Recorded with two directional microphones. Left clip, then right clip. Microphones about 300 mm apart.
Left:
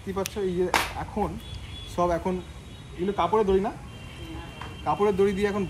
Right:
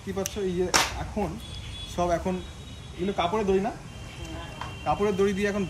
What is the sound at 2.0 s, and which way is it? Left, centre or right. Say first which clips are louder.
Speech: left 1 dB; centre.